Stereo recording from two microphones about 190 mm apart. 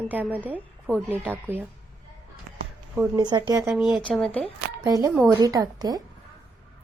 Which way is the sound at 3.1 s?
20° right (ahead or behind).